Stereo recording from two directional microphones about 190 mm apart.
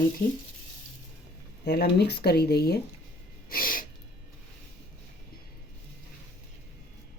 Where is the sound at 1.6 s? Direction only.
60° left (ahead or behind).